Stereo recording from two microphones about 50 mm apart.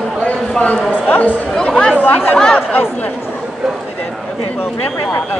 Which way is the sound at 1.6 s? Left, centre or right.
Centre.